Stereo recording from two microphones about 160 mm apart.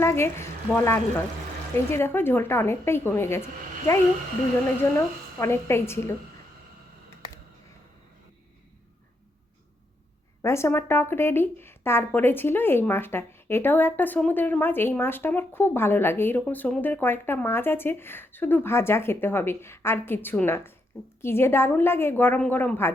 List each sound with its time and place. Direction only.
0.0 s speech: 15° left (ahead or behind)
4.8 s speech: 15° left (ahead or behind)
10.4 s speech: 15° left (ahead or behind)